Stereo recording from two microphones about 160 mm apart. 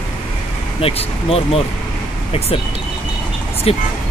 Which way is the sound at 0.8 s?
35° left (ahead or behind).